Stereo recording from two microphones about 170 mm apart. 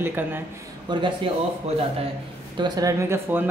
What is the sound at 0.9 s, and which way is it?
Speech, 25° right (ahead or behind).